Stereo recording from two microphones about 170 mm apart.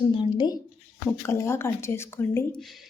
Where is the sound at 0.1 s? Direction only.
30° left (ahead or behind).